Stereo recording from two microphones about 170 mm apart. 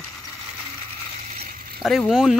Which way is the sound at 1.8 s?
Centre (ahead or behind).